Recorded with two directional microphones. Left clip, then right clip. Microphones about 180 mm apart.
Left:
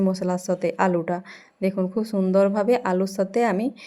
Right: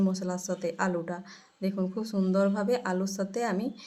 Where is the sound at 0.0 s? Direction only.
30° left (ahead or behind).